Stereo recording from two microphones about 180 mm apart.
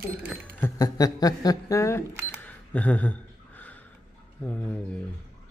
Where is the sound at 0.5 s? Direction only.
15° left (ahead or behind).